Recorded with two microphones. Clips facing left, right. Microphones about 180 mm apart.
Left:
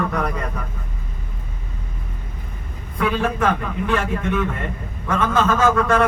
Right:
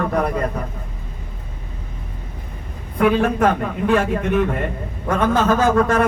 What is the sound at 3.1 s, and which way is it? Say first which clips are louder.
A man's voice: right 4 dB; 45° right (ahead or behind).